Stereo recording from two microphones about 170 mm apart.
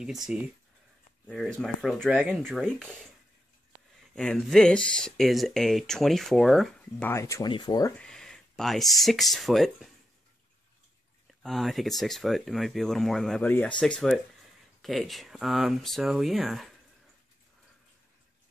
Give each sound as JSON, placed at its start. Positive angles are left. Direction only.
{"t": 0.0, "sound": "speech", "side_deg": -5}
{"t": 4.0, "sound": "speech", "side_deg": 5}
{"t": 8.0, "sound": "speech", "side_deg": 5}
{"t": 11.2, "sound": "speech", "side_deg": 0}